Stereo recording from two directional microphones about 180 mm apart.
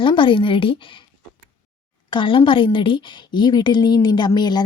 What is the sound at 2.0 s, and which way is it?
Speech, 25° left (ahead or behind).